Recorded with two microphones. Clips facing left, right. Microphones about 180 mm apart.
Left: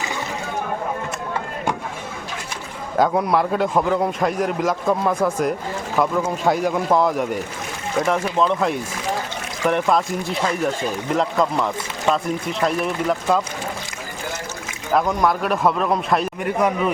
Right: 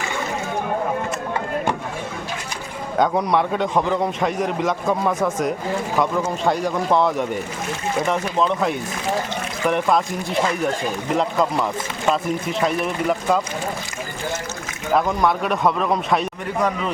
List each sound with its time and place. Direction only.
3.0 s a man's voice: 5° left (ahead or behind)
11.1 s a man's voice: centre (ahead or behind)
14.9 s a man's voice: centre (ahead or behind)